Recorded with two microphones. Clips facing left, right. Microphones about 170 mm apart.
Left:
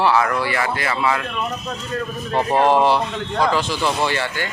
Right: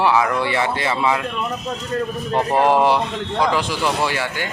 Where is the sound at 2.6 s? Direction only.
10° right (ahead or behind).